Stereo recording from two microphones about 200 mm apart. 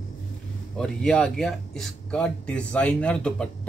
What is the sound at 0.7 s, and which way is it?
Speech, 5° left (ahead or behind).